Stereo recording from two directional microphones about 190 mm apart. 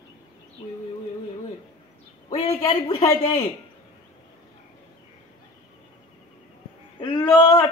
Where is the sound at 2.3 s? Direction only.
30° left (ahead or behind).